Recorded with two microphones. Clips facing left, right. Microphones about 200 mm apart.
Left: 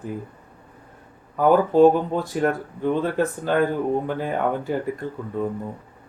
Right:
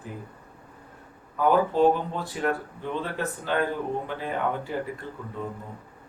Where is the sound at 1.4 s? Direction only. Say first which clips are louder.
Left 6 dB; 45° left (ahead or behind).